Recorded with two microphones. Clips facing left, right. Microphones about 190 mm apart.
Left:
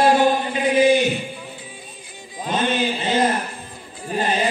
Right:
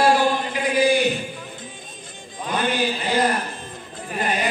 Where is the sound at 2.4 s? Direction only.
25° left (ahead or behind).